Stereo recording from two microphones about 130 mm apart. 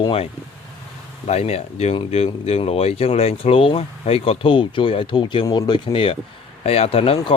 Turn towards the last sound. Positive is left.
turn(degrees=45)  # may be behind; listen again after turning